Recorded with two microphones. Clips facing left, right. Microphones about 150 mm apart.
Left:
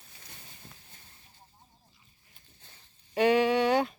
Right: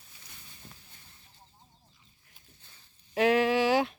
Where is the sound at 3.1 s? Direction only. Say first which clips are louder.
Left 1 dB; centre (ahead or behind).